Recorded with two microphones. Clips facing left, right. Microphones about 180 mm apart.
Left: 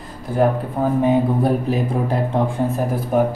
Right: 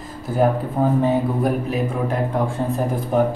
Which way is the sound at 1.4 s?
35° left (ahead or behind).